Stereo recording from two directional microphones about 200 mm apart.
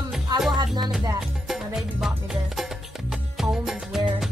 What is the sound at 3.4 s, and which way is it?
Music, centre (ahead or behind).